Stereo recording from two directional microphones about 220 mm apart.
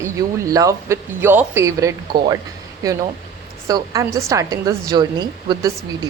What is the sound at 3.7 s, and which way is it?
A woman's voice, 15° right (ahead or behind).